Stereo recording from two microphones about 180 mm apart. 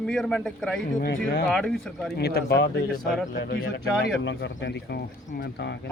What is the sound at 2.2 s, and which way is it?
Speech, 60° left (ahead or behind).